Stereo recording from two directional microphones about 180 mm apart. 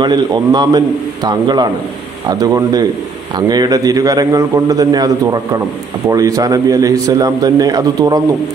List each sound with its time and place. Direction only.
0.0 s a man's voice: 25° right (ahead or behind)